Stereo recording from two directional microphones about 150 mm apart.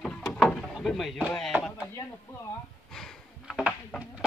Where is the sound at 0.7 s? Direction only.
Centre (ahead or behind).